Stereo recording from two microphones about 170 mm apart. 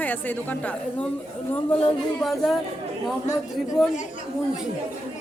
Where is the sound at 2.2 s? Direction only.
Centre (ahead or behind).